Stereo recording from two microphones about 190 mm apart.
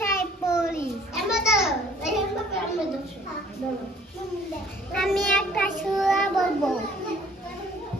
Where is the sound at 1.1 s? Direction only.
5° right (ahead or behind).